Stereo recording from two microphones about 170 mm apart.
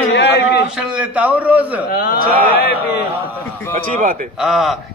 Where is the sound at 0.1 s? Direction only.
90° left.